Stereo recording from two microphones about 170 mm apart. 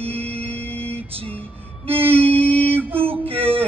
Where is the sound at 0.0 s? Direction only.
35° right (ahead or behind).